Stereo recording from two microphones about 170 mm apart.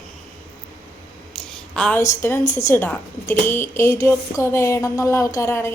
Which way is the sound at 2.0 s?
15° left (ahead or behind).